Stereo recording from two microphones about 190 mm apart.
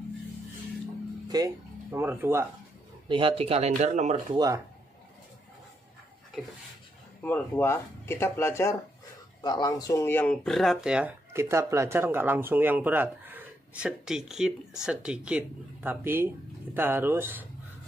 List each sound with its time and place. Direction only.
1.3 s speech: 15° right (ahead or behind)
3.1 s speech: 25° right (ahead or behind)
7.2 s speech: 10° left (ahead or behind); by 17.5 s 10° right (ahead or behind)